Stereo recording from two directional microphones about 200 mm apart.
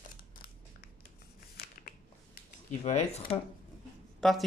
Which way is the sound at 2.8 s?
35° left (ahead or behind).